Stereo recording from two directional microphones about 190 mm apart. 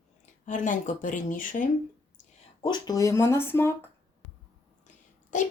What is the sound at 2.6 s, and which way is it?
Speech, 20° left (ahead or behind).